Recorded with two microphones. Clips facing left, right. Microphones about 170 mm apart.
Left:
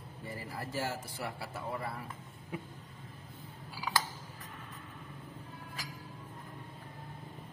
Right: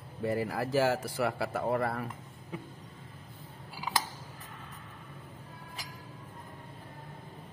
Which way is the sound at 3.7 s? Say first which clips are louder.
Right 1 dB; 20° right (ahead or behind).